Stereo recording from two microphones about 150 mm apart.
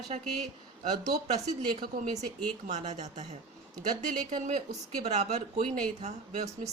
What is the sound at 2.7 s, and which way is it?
Speech, 50° right (ahead or behind).